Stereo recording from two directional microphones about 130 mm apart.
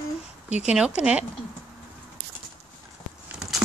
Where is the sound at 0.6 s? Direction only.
5° right (ahead or behind).